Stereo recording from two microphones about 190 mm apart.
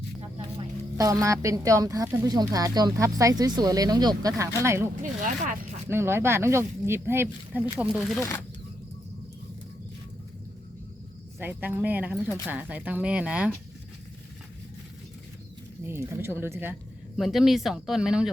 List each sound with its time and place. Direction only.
0.2 s a sound: 30° right (ahead or behind)
0.9 s speech: 20° right (ahead or behind)
5.9 s speech: 10° right (ahead or behind)
8.2 s speech: 15° left (ahead or behind)
11.3 s speech: 10° right (ahead or behind)
15.9 s speech: 15° right (ahead or behind)